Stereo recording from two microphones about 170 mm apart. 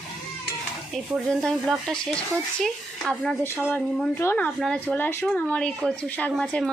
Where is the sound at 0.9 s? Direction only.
Centre (ahead or behind).